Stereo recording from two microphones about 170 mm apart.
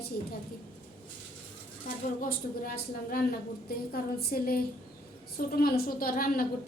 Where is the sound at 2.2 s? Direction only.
55° left (ahead or behind).